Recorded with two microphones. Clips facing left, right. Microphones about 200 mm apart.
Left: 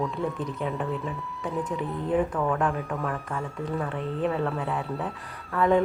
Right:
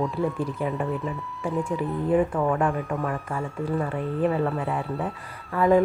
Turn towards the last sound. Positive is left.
turn(degrees=0)  # may be behind; listen again after turning